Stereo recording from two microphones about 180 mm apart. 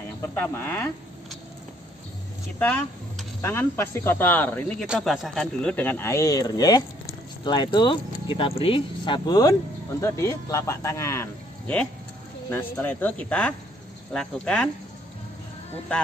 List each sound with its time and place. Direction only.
0.2 s speech: 10° left (ahead or behind)
2.6 s speech: 10° left (ahead or behind)